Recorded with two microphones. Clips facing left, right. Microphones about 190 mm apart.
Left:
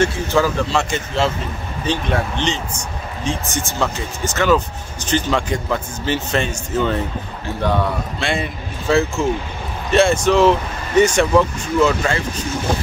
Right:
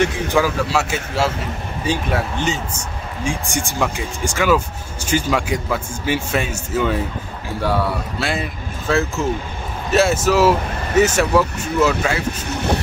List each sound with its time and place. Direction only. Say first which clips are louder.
0.0 s speech: left 1 dB; 15° right (ahead or behind)
12.4 s speech: even; 65° right (ahead or behind)